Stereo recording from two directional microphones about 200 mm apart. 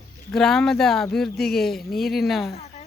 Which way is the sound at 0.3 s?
Centre (ahead or behind).